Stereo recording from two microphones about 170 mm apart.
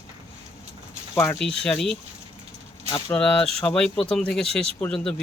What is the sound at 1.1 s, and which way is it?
Speech, 10° left (ahead or behind).